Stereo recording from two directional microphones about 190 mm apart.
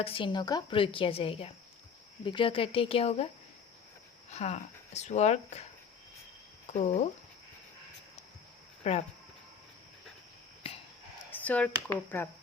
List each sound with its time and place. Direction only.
0.0 s a woman's voice: 30° left (ahead or behind)
4.3 s speech: 35° left (ahead or behind)
6.7 s speech: 35° left (ahead or behind)
8.8 s speech: 35° left (ahead or behind)
11.3 s a sound: 10° left (ahead or behind)
11.9 s speech: 10° left (ahead or behind)